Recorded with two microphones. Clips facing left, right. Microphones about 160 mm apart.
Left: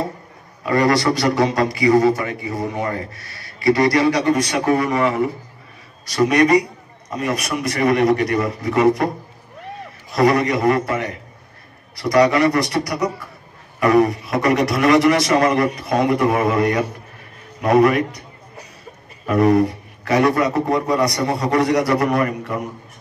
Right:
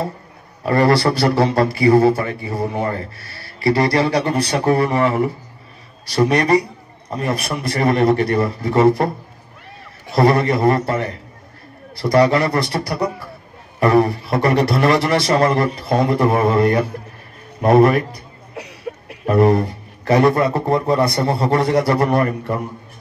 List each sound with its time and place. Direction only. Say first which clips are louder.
0.7 s a man's voice: right 2 dB; 30° right (ahead or behind)
10.1 s a man's voice: right 1 dB; 30° right (ahead or behind)
18.9 s a sound: right 12 dB; 65° right (ahead or behind)
19.2 s a man's voice: even; 30° right (ahead or behind)